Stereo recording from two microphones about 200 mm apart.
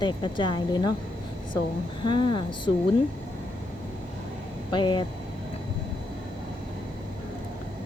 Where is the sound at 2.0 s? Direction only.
20° left (ahead or behind).